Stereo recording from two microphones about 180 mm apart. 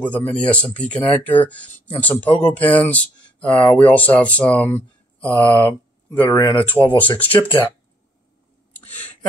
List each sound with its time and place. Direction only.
0.0 s speech: 10° left (ahead or behind)
6.9 s speech: 30° left (ahead or behind)